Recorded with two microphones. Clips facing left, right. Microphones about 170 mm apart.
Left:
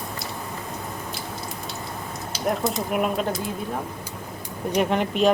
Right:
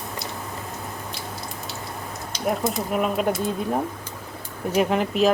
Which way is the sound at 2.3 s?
Centre (ahead or behind).